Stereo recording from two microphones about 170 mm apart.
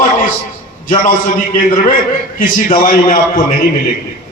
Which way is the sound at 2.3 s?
55° left (ahead or behind).